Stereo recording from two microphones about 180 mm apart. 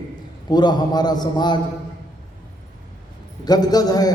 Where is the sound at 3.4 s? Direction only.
20° left (ahead or behind).